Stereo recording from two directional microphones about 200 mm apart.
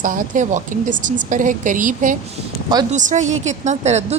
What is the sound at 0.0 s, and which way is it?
Speech, 40° right (ahead or behind).